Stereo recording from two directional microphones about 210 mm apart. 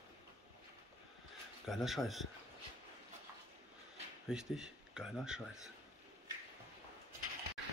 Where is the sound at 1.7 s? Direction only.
Centre (ahead or behind).